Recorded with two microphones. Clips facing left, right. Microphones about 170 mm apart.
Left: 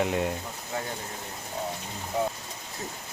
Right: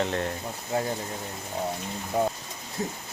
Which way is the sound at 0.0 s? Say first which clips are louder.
Left 1 dB; 10° left (ahead or behind).